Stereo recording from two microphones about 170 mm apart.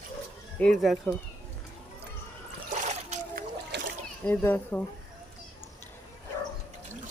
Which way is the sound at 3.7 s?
80° right.